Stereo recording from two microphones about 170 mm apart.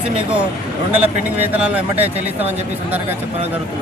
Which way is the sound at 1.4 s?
10° right (ahead or behind).